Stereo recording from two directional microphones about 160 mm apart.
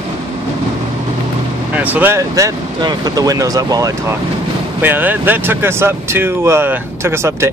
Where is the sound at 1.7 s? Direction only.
10° right (ahead or behind).